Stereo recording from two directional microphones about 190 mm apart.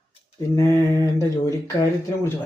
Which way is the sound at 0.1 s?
15° left (ahead or behind).